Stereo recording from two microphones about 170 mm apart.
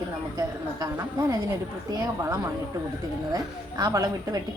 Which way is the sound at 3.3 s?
20° right (ahead or behind).